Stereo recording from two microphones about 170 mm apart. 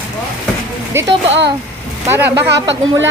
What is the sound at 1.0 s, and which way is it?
Speech, 15° right (ahead or behind).